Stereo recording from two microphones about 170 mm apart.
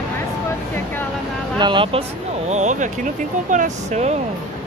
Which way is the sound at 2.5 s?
45° right (ahead or behind).